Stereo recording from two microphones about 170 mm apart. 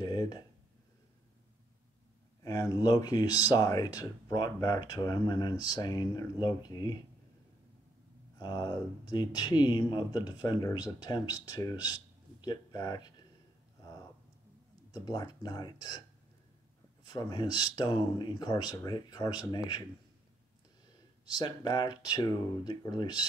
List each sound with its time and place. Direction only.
0.0 s speech: 25° left (ahead or behind)
2.4 s speech: 20° left (ahead or behind)
8.4 s speech: 25° left (ahead or behind)
15.0 s speech: 25° left (ahead or behind)
17.0 s speech: 25° left (ahead or behind)
21.4 s speech: 25° left (ahead or behind)